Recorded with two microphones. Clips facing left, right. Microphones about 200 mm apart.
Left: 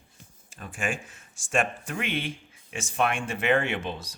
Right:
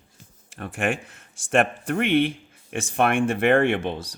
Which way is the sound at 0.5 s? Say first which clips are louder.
Right 6 dB; 65° right (ahead or behind).